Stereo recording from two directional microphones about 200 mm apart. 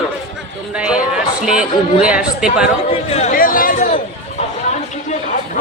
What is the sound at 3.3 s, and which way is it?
Chatter, 45° left (ahead or behind).